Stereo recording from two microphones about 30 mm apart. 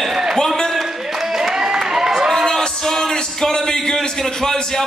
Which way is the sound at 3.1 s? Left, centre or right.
Centre.